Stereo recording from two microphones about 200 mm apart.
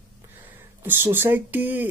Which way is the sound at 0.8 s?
10° right (ahead or behind).